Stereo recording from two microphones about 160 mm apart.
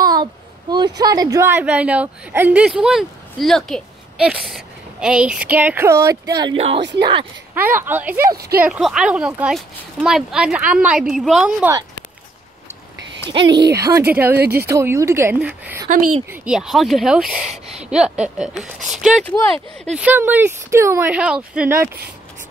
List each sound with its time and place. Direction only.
0.0 s a woman's voice: 25° right (ahead or behind)
6.5 s speech: 35° right (ahead or behind)
7.8 s speech: 10° right (ahead or behind)
8.4 s speech: 75° right (ahead or behind)
8.6 s speech: 5° right (ahead or behind)
13.5 s speech: 90° right
13.7 s speech: 20° right (ahead or behind); by 20.1 s centre (ahead or behind)
20.1 s speech: 10° right (ahead or behind)